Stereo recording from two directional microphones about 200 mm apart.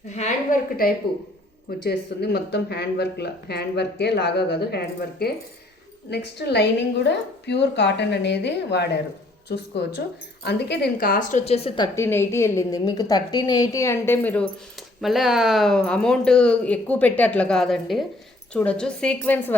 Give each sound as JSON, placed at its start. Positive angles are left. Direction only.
{"t": 0.2, "sound": "a woman's voice", "side_deg": 45}
{"t": 11.9, "sound": "a woman's voice", "side_deg": 10}